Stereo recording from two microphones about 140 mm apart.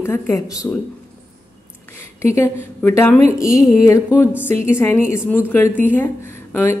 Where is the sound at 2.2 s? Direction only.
20° left (ahead or behind).